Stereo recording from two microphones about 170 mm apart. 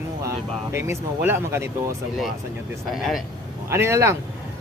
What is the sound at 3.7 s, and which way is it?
Speech, 15° right (ahead or behind).